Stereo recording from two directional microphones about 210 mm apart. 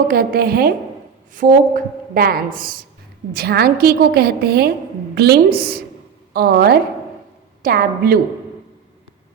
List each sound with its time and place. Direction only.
0.1 s a woman's voice: 45° right (ahead or behind)